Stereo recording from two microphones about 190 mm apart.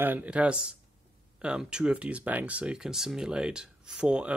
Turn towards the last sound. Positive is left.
turn(degrees=-5)  # may be behind; listen again after turning